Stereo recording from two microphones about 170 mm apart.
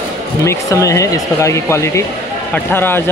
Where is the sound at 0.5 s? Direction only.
20° left (ahead or behind).